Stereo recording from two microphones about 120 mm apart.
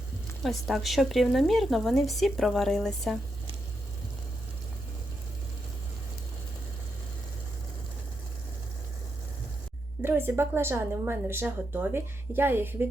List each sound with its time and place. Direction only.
0.4 s speech: centre (ahead or behind)
10.0 s a woman's voice: 20° right (ahead or behind)